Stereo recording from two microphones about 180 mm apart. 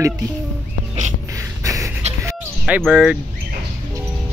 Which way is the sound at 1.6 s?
20° right (ahead or behind).